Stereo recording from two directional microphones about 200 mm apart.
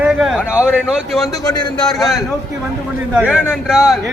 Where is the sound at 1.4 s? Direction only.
20° left (ahead or behind).